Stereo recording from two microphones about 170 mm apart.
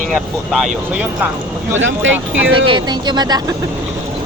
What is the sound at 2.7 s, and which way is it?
Speech, 25° right (ahead or behind).